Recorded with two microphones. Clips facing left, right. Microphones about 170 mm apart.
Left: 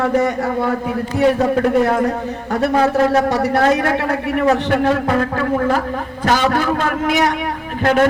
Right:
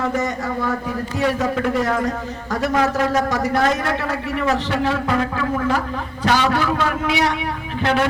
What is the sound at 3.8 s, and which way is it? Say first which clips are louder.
A man's voice: left 5 dB; 60° left (ahead or behind).